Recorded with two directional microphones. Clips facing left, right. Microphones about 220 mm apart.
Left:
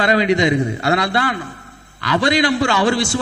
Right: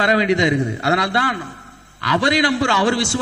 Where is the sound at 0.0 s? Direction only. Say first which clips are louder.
Left 1 dB; 15° left (ahead or behind).